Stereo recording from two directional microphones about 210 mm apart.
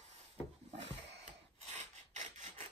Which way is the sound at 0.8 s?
30° right (ahead or behind).